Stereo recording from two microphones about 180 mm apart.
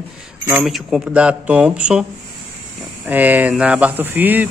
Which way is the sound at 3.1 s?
10° right (ahead or behind).